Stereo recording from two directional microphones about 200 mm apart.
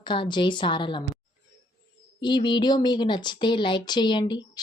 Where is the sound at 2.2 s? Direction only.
25° left (ahead or behind).